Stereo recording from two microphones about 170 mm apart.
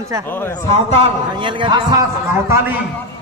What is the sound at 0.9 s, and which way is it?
A man's voice, 30° right (ahead or behind).